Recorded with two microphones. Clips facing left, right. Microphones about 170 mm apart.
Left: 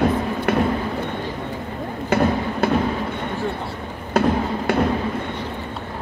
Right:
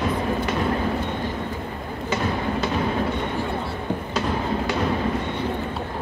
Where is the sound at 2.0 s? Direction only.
55° left (ahead or behind).